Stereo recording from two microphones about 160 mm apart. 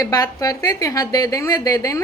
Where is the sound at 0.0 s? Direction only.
20° left (ahead or behind).